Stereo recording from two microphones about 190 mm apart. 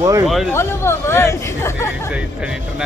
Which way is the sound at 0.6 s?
15° left (ahead or behind).